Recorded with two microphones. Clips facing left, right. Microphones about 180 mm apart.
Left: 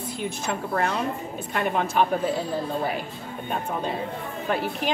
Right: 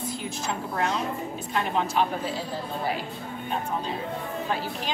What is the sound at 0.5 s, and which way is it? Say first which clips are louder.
A woman's voice: left 2 dB; 55° left (ahead or behind).